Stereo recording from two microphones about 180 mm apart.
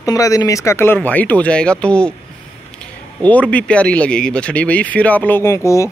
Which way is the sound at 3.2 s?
10° left (ahead or behind).